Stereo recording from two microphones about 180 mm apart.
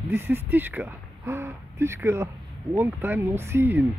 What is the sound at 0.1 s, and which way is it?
Speech, 10° right (ahead or behind).